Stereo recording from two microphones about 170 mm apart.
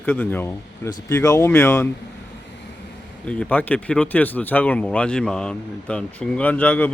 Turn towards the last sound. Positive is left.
turn(degrees=10)  # may be behind; listen again after turning